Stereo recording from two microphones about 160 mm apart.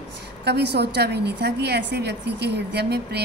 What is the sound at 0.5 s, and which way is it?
A woman's voice, 90° right.